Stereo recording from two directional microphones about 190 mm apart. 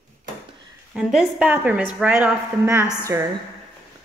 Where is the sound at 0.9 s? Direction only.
Centre (ahead or behind).